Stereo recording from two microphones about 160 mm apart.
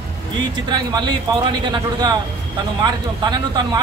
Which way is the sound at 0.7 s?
30° right (ahead or behind).